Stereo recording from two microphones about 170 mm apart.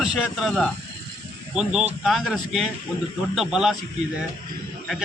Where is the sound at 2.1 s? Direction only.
Centre (ahead or behind).